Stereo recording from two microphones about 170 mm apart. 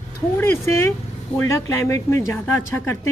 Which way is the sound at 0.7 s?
15° left (ahead or behind).